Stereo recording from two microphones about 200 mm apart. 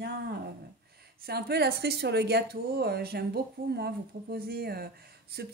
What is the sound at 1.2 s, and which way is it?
Speech, 50° right (ahead or behind).